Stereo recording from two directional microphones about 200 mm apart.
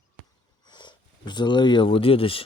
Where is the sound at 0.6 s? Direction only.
20° left (ahead or behind).